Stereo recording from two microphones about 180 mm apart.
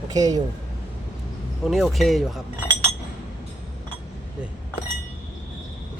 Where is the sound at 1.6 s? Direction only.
Centre (ahead or behind).